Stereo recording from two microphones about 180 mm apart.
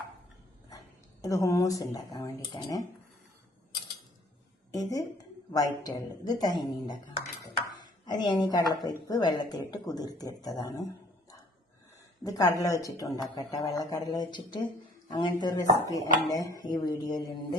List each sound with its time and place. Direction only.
1.2 s a woman's voice: 15° left (ahead or behind)
4.7 s a woman's voice: 20° left (ahead or behind)
12.2 s a woman's voice: 20° left (ahead or behind)